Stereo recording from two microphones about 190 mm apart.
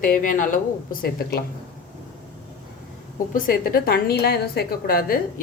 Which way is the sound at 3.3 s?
50° left (ahead or behind).